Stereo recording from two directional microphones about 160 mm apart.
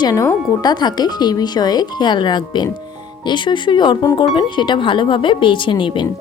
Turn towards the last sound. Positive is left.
turn(degrees=30)  # may be behind; listen again after turning